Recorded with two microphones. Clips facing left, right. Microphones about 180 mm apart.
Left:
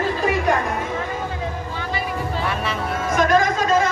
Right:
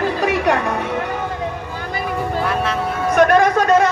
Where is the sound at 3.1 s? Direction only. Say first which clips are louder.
Right 5 dB; 65° right (ahead or behind).